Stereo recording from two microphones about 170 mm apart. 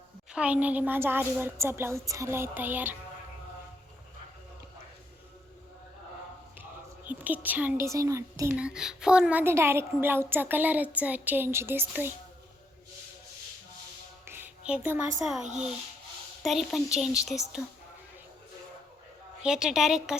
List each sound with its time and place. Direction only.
0.3 s a woman's voice: 5° right (ahead or behind)
6.6 s a sound: 10° right (ahead or behind)
7.4 s a woman's voice: 10° right (ahead or behind)
8.5 s a woman's voice: 5° right (ahead or behind)
14.3 s a sound: 10° right (ahead or behind)
15.2 s a woman's voice: 5° right (ahead or behind)
19.4 s a woman's voice: 5° right (ahead or behind)